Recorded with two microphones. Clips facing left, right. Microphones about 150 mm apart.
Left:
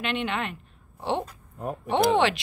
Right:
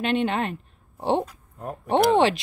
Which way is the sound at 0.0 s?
40° right (ahead or behind).